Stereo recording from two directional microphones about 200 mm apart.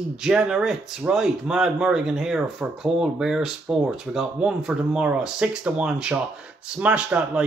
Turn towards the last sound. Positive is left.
turn(degrees=-5)  # may be behind; listen again after turning